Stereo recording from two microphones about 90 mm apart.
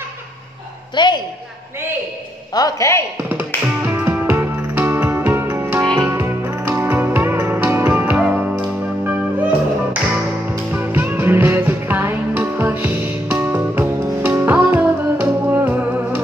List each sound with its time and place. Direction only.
0.9 s a woman's voice: 55° left (ahead or behind)
2.5 s a man's voice: 40° left (ahead or behind)
3.3 s music: 20° right (ahead or behind)